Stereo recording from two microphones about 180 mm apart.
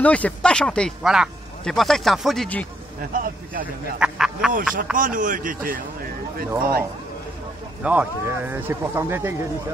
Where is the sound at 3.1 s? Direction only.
50° right (ahead or behind).